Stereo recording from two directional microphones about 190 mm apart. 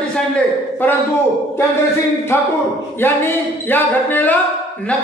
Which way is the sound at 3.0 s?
10° left (ahead or behind).